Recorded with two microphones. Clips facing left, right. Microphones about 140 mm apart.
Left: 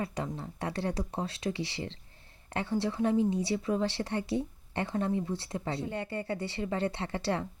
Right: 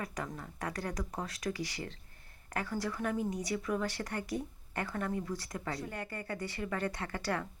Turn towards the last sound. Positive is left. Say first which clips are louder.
# left 4 dB
turn(degrees=25)  # may be behind; listen again after turning